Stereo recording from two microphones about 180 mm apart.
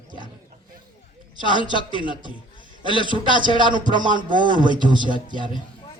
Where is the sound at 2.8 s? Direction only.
25° right (ahead or behind).